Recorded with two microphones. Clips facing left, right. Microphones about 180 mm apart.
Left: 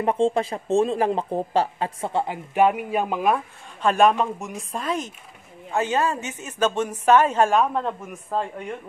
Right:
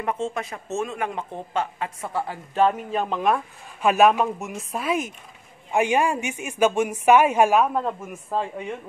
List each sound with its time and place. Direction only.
0.0 s speech: 30° left (ahead or behind); by 3.4 s 5° left (ahead or behind)
3.8 s speech: 10° right (ahead or behind)